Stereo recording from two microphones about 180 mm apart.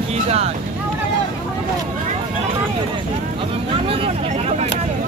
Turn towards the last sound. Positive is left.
turn(degrees=-35)  # may be behind; listen again after turning